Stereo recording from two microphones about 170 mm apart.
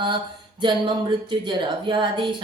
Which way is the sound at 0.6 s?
30° right (ahead or behind).